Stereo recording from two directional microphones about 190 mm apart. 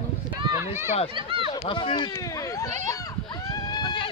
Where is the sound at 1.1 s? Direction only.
25° right (ahead or behind).